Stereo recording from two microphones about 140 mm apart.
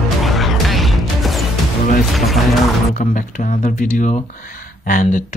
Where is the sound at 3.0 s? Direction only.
65° left (ahead or behind).